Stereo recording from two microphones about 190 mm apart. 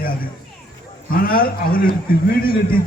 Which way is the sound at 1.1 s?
50° left (ahead or behind).